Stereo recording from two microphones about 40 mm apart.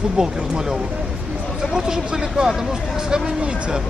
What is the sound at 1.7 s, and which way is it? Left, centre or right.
Vehicle, centre.